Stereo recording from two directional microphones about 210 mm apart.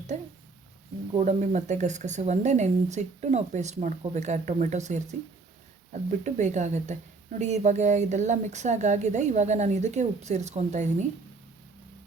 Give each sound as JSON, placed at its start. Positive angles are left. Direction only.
{"t": 0.1, "sound": "speech", "side_deg": -35}